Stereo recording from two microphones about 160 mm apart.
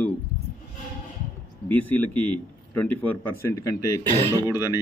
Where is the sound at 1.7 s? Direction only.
10° left (ahead or behind).